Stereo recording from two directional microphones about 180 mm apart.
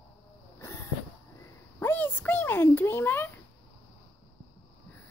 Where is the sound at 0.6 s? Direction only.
15° left (ahead or behind).